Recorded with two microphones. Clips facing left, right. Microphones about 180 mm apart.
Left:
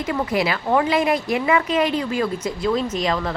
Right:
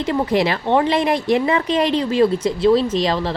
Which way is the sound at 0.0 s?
30° right (ahead or behind).